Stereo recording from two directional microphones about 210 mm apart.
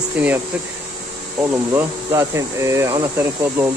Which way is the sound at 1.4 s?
10° right (ahead or behind).